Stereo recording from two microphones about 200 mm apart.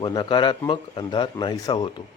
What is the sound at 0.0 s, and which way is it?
A man's voice, 25° left (ahead or behind).